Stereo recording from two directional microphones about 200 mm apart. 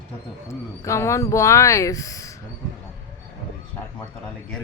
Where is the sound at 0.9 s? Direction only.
15° left (ahead or behind).